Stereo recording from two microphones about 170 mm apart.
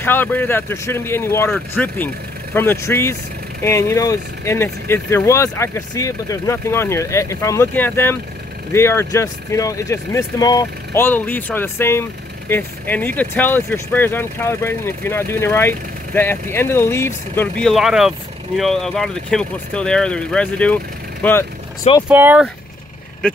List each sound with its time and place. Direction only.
0.0 s speech: 10° left (ahead or behind)
22.1 s speech: 10° right (ahead or behind)
23.2 s speech: 5° left (ahead or behind)